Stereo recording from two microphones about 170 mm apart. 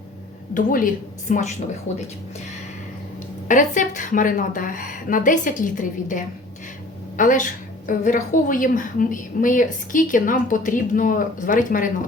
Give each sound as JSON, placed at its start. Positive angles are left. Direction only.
{"t": 0.5, "sound": "a woman's voice", "side_deg": 55}
{"t": 3.5, "sound": "a woman's voice", "side_deg": 50}
{"t": 7.2, "sound": "a woman's voice", "side_deg": 50}